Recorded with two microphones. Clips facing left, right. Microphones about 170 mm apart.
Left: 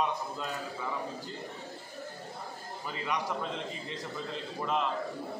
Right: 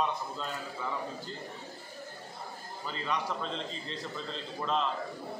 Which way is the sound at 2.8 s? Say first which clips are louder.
Even; 10° left (ahead or behind).